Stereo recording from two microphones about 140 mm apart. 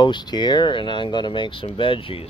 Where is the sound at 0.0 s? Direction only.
35° left (ahead or behind).